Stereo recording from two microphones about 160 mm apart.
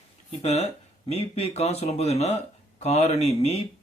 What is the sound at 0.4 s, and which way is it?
Speech, 40° left (ahead or behind).